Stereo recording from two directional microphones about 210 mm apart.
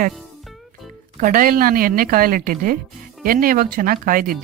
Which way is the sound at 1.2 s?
40° right (ahead or behind).